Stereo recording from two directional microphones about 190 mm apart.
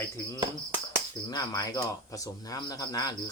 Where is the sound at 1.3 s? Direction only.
20° left (ahead or behind).